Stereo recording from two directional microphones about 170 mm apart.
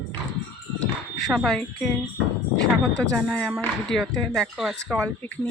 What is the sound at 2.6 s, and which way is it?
Speech, 90° left.